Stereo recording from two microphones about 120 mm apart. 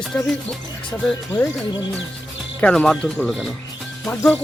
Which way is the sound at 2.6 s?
10° left (ahead or behind).